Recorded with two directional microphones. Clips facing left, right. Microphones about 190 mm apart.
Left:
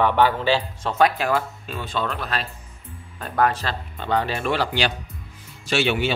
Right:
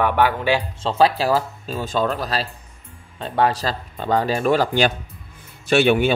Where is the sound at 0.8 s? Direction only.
30° right (ahead or behind).